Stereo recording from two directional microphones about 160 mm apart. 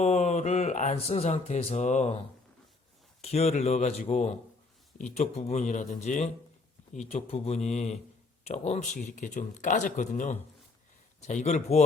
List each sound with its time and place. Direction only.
0.0 s speech: 45° left (ahead or behind)
3.2 s speech: 40° left (ahead or behind)